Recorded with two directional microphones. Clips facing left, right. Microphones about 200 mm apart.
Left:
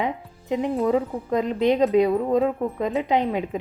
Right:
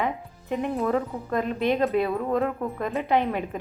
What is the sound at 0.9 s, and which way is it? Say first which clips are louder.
Speech: left 4 dB; 15° left (ahead or behind).